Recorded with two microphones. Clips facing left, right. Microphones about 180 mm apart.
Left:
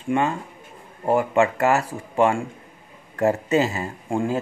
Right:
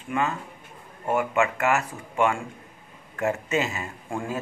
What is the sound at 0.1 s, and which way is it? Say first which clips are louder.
Speech: left 5 dB; 30° left (ahead or behind).